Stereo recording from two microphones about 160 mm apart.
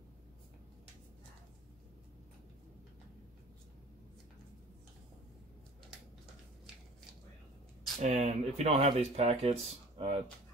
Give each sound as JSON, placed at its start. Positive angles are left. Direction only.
{"t": 8.0, "sound": "speech", "side_deg": -45}